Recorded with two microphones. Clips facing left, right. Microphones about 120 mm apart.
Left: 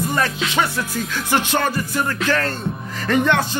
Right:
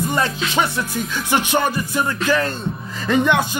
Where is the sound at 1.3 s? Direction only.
15° right (ahead or behind).